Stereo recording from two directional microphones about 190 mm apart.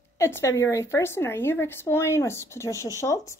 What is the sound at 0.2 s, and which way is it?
Speech, 15° left (ahead or behind).